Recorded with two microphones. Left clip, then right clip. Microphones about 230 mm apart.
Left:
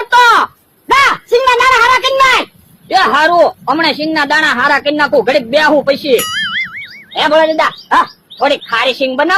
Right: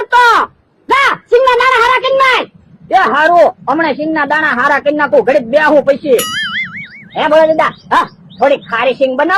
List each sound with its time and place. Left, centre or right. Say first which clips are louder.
0.0 s a sound: left 1 dB; left
2.9 s a man's voice: right 1 dB; left
6.1 s music: even; centre
7.1 s speech: right 1 dB; left